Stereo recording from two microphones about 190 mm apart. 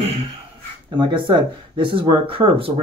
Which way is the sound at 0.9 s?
25° right (ahead or behind).